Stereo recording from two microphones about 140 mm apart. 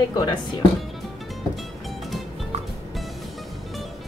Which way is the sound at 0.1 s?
30° left (ahead or behind).